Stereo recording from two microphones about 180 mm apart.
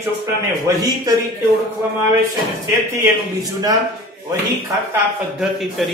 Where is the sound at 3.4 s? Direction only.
20° right (ahead or behind).